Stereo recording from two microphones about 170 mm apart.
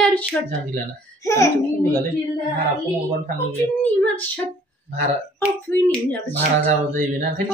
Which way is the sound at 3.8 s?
10° left (ahead or behind).